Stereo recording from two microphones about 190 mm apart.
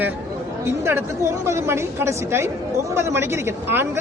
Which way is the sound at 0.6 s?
15° right (ahead or behind).